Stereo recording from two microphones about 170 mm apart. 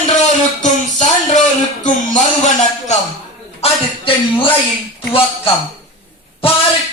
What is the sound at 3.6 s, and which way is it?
Speech, 30° left (ahead or behind).